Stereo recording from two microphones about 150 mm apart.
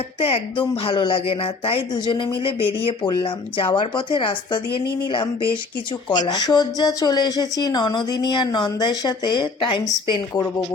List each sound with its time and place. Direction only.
0.2 s a woman's voice: 40° left (ahead or behind)